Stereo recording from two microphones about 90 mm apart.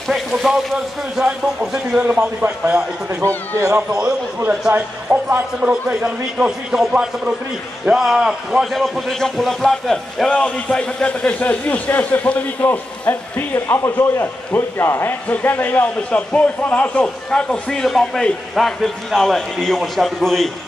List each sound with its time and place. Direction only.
0.1 s a man's voice: centre (ahead or behind)
3.3 s speech: 35° right (ahead or behind)
3.7 s a man's voice: 10° right (ahead or behind)